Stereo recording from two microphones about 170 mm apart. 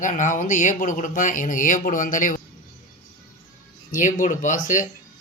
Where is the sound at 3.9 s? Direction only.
50° left (ahead or behind).